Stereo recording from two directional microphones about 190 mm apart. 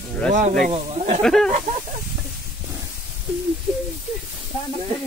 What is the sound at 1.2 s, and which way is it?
Speech, centre (ahead or behind).